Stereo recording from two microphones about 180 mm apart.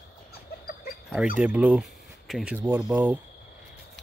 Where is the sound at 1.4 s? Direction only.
10° right (ahead or behind).